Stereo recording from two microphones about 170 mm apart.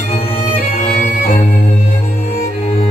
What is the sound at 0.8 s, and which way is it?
Music, 45° left (ahead or behind).